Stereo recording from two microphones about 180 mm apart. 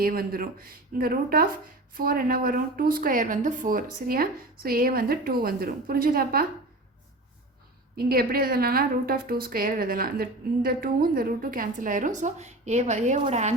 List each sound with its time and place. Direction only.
0.0 s a woman's voice: 55° right (ahead or behind)
7.9 s a woman's voice: 55° right (ahead or behind); by 13.5 s 40° right (ahead or behind)